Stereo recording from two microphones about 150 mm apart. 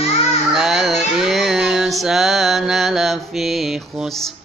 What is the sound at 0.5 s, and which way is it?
Music, centre (ahead or behind).